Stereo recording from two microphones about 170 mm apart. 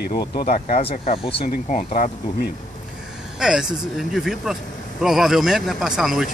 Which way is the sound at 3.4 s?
5° right (ahead or behind).